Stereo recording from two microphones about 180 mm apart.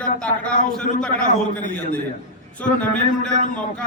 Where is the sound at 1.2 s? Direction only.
45° left (ahead or behind).